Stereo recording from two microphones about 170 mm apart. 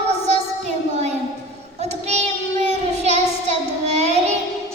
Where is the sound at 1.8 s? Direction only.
40° right (ahead or behind).